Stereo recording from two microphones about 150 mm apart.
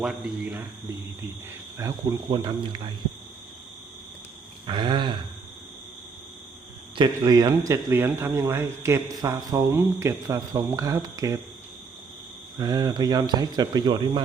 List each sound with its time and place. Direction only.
0.0 s speech: 5° right (ahead or behind)
1.8 s speech: 25° right (ahead or behind)
4.6 s speech: 30° right (ahead or behind)
7.2 s speech: 25° right (ahead or behind)
12.5 s speech: 25° right (ahead or behind)